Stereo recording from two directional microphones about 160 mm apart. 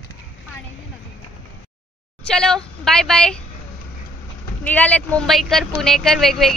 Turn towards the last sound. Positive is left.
turn(degrees=0)  # may be behind; listen again after turning